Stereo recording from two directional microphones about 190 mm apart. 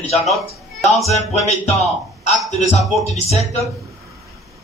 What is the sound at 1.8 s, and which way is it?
A man's voice, 35° left (ahead or behind).